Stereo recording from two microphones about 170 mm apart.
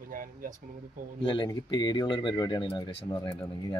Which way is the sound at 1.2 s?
25° left (ahead or behind).